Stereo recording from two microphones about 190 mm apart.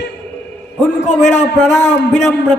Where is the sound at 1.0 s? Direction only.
35° left (ahead or behind).